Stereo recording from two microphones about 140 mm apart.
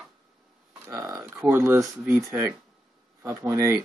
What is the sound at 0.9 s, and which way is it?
Speech, 25° right (ahead or behind).